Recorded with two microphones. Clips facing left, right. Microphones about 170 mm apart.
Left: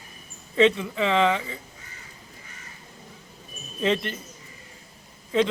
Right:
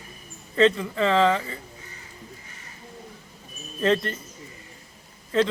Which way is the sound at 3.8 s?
15° left (ahead or behind).